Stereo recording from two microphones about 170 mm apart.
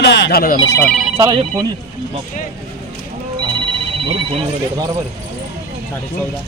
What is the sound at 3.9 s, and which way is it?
Telephone, 35° right (ahead or behind).